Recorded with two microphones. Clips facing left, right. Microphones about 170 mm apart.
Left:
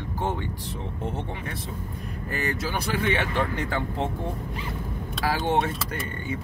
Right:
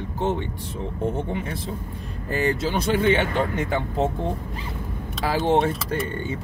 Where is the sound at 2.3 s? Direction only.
25° right (ahead or behind).